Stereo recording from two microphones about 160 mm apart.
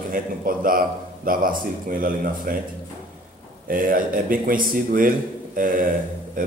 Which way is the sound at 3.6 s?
60° right (ahead or behind).